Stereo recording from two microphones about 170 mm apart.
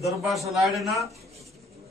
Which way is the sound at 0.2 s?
Centre (ahead or behind).